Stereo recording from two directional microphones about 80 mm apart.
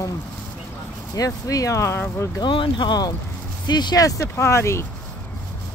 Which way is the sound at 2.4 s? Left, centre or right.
Left.